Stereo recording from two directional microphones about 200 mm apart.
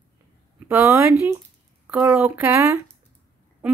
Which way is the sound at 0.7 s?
15° right (ahead or behind).